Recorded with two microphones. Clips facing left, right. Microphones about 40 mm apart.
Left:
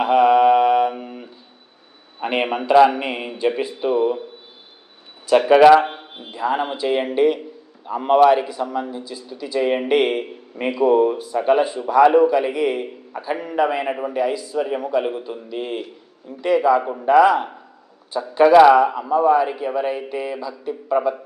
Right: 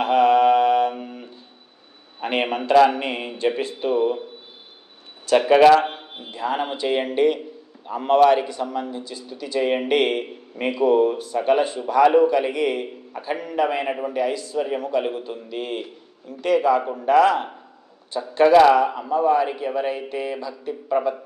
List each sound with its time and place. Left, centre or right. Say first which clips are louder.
0.0 s mantra: left 2 dB; centre
2.1 s a man's voice: left 2 dB; centre
5.3 s a man's voice: left 3 dB; centre
13.4 s a man's voice: left 2 dB; centre
13.7 s speech: left 2 dB; centre